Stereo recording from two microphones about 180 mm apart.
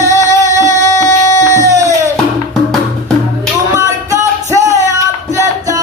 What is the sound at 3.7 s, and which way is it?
Music, 15° right (ahead or behind).